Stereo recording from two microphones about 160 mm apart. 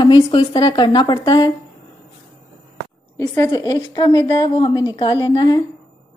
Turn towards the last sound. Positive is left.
turn(degrees=25)  # may be behind; listen again after turning